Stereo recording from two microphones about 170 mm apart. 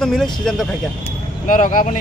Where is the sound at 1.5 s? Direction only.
50° left (ahead or behind).